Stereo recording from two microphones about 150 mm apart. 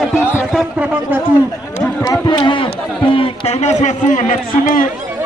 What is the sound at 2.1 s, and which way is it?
A man's voice, 25° left (ahead or behind).